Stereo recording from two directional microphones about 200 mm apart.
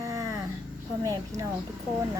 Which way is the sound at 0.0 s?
15° right (ahead or behind).